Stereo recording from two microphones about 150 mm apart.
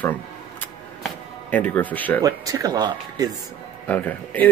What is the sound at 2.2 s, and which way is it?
Speech, 25° right (ahead or behind).